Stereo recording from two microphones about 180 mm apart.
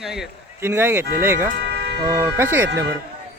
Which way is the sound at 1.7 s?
65° right (ahead or behind).